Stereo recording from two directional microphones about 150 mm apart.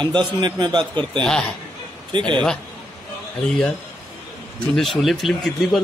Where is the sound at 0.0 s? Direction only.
30° right (ahead or behind).